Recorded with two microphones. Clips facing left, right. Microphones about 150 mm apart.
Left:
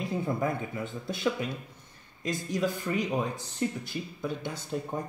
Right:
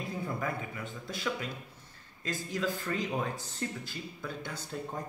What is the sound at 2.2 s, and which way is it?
Speech, 15° left (ahead or behind).